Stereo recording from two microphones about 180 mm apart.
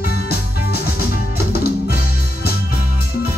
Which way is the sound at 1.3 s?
60° left (ahead or behind).